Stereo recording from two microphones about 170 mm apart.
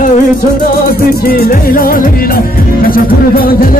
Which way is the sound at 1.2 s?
60° left (ahead or behind).